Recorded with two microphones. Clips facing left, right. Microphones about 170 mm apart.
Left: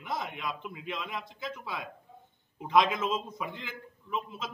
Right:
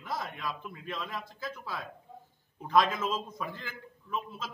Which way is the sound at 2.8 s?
20° left (ahead or behind).